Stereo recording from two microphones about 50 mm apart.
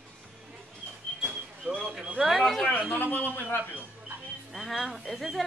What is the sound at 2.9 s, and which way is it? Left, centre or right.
Speech, left.